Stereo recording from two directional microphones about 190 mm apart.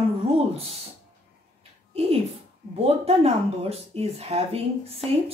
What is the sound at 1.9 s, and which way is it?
Speech, 35° right (ahead or behind).